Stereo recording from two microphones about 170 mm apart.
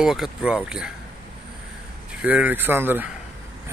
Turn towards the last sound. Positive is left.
turn(degrees=-10)  # may be behind; listen again after turning